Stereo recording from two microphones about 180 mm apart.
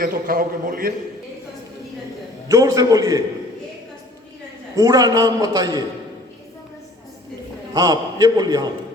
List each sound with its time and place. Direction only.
0.0 s a man's voice: 55° right (ahead or behind)
2.5 s a man's voice: 20° right (ahead or behind)
4.7 s a man's voice: 20° right (ahead or behind)
7.7 s a man's voice: 20° right (ahead or behind)